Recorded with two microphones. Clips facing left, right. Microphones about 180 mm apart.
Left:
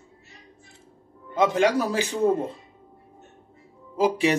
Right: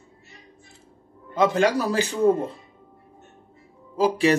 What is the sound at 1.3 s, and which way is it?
Speech, 20° left (ahead or behind).